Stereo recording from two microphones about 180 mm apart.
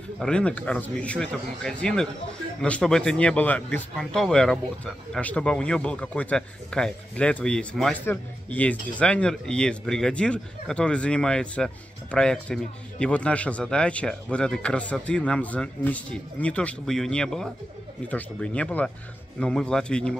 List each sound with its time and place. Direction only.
0.2 s speech: 5° left (ahead or behind)